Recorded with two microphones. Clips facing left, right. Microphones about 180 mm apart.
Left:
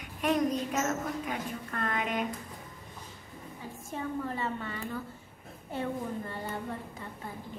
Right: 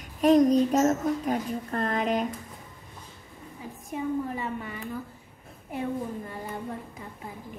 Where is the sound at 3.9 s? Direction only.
10° right (ahead or behind).